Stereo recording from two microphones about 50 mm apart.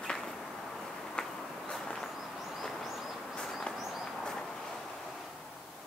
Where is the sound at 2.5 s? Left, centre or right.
Centre.